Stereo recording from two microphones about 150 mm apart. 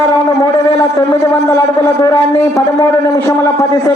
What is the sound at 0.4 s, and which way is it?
Speech, 25° left (ahead or behind).